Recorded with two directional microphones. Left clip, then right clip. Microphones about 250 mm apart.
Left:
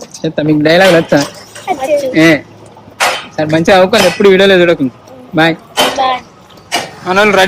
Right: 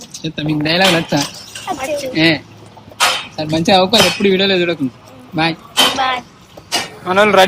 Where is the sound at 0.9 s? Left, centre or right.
Centre.